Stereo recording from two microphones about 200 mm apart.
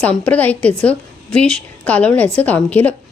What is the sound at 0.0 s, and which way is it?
A woman's voice, 5° left (ahead or behind).